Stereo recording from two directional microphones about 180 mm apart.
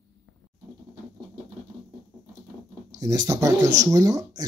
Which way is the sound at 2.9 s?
20° right (ahead or behind).